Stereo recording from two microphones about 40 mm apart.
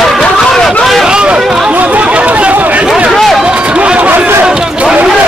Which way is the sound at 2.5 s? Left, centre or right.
Right.